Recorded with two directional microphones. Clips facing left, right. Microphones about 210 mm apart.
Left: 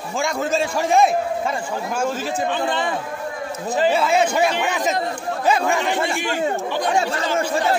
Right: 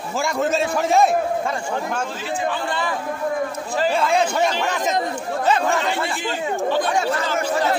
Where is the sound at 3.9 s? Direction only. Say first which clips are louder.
Left 1 dB; 5° left (ahead or behind).